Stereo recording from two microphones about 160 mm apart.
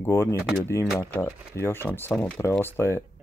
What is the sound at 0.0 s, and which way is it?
Speech, 15° left (ahead or behind).